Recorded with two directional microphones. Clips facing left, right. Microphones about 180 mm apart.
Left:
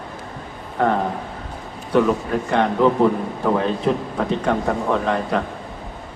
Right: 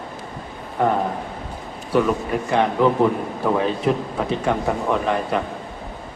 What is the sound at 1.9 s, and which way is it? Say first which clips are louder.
A man's voice: left 2 dB; 5° right (ahead or behind).